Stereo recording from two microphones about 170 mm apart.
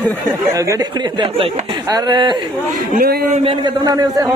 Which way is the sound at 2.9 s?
60° right (ahead or behind).